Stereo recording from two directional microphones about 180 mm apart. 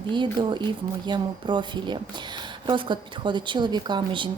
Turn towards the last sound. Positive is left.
turn(degrees=-25)  # may be behind; listen again after turning